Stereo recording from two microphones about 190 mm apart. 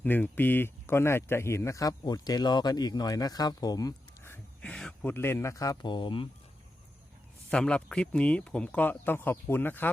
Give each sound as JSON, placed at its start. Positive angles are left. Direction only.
{"t": 0.0, "sound": "speech", "side_deg": 10}
{"t": 7.5, "sound": "speech", "side_deg": 5}